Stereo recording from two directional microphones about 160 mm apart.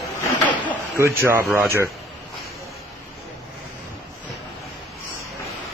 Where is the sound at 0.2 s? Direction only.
10° left (ahead or behind).